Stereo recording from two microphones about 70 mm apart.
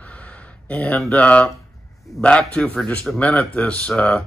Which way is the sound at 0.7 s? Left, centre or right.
Left.